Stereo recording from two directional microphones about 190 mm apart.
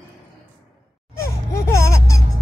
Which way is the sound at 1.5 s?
15° left (ahead or behind).